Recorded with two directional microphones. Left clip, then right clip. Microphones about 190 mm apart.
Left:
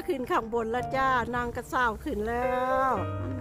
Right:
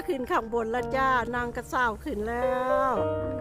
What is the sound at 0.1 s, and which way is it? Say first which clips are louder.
Speech: right 1 dB; centre (ahead or behind).